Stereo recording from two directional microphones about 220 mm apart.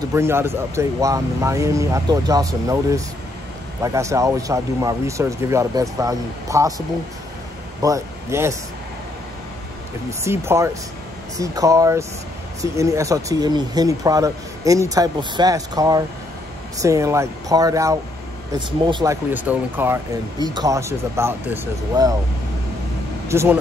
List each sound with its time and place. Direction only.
0.1 s speech: 10° right (ahead or behind)
7.8 s speech: 15° right (ahead or behind)
10.2 s speech: 10° right (ahead or behind)
19.3 s speech: 5° right (ahead or behind)
23.2 s speech: 10° right (ahead or behind)